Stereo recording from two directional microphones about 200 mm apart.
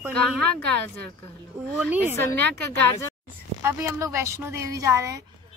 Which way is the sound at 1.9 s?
10° right (ahead or behind).